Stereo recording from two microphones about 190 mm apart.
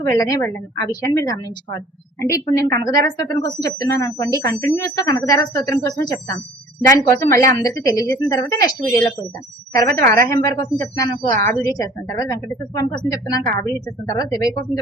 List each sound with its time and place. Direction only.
0.0 s a woman's voice: 20° left (ahead or behind)
10.0 s a woman's voice: 15° left (ahead or behind)